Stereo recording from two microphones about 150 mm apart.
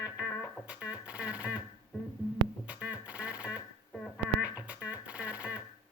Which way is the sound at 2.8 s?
10° right (ahead or behind).